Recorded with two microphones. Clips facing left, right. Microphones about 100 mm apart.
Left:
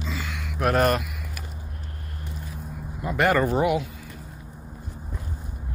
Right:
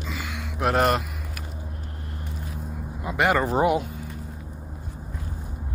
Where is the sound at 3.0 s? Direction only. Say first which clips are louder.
Left 1 dB; 15° right (ahead or behind).